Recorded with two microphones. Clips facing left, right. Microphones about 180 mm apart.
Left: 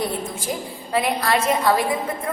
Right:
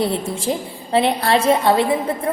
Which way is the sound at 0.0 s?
25° right (ahead or behind).